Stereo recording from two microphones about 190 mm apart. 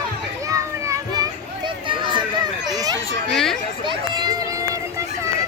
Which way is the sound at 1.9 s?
25° right (ahead or behind).